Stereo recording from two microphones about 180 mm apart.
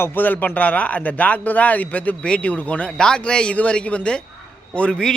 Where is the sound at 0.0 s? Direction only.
10° left (ahead or behind).